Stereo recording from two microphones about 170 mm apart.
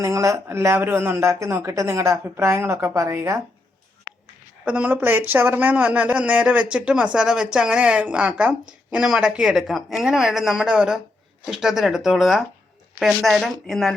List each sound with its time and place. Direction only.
0.0 s speech: 20° right (ahead or behind)
4.6 s speech: 5° right (ahead or behind)